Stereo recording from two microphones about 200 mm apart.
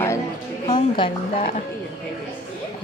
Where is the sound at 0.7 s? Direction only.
25° left (ahead or behind).